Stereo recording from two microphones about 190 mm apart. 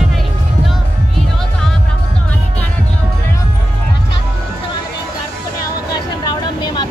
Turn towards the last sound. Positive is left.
turn(degrees=25)  # may be behind; listen again after turning